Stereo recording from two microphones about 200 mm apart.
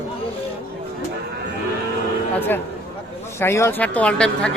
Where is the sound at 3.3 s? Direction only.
15° left (ahead or behind).